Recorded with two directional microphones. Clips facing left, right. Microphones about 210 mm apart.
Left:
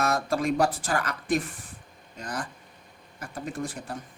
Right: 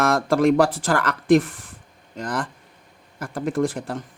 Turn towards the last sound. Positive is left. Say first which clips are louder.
# right 10 dB
turn(degrees=-90)